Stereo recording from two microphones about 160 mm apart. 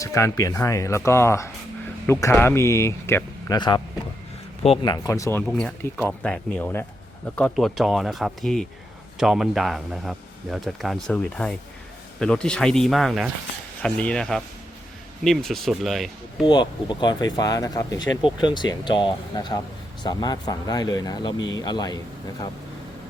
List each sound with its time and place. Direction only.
0.0 s speech: 20° left (ahead or behind)
4.6 s speech: 35° left (ahead or behind)
5.4 s speech: 5° left (ahead or behind)
16.5 s speech: 30° left (ahead or behind)